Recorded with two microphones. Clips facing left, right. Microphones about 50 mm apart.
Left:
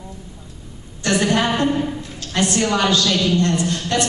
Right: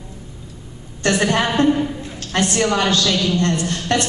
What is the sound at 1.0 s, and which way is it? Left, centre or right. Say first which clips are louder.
A woman's voice: even; right.